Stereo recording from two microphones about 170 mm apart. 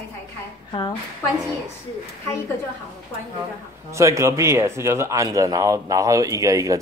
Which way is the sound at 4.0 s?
15° right (ahead or behind).